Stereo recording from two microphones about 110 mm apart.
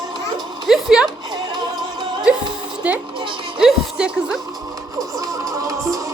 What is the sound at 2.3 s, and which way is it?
Music, 10° right (ahead or behind).